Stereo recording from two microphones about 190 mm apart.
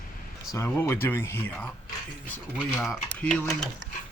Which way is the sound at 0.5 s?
15° left (ahead or behind).